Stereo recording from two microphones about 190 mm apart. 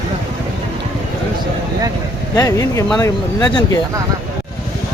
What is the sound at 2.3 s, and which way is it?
Speech, 20° left (ahead or behind).